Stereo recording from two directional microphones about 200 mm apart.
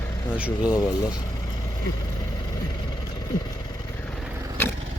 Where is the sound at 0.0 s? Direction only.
10° left (ahead or behind).